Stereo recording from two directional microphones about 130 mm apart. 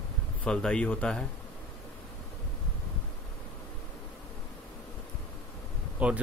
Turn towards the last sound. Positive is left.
turn(degrees=-10)  # may be behind; listen again after turning